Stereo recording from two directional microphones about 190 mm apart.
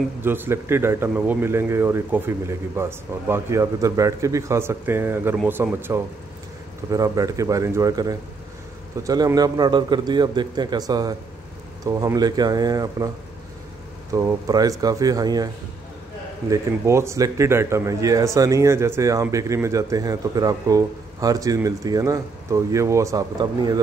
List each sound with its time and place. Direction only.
0.2 s a man's voice: 10° right (ahead or behind)
14.1 s a man's voice: 20° right (ahead or behind)